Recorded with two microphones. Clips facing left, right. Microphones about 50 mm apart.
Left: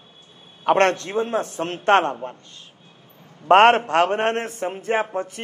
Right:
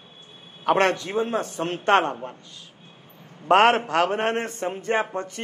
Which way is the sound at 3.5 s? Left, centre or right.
Left.